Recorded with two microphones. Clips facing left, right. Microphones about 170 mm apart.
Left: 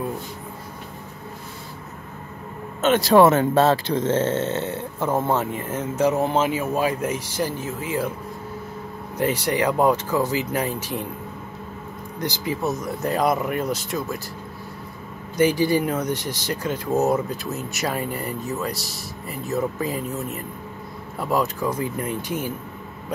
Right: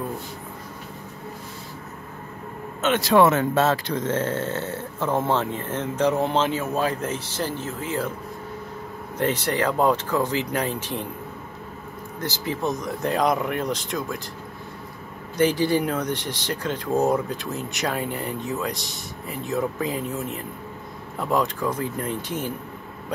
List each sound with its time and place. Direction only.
2.8 s speech: 35° left (ahead or behind); by 5.1 s 20° left (ahead or behind)
5.1 s speech: 5° left (ahead or behind)
9.2 s speech: 10° left (ahead or behind)
12.2 s speech: 10° left (ahead or behind)
15.3 s speech: 10° left (ahead or behind)